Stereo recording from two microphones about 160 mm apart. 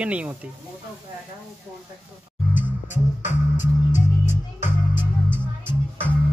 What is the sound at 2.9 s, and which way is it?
Music, 50° left (ahead or behind).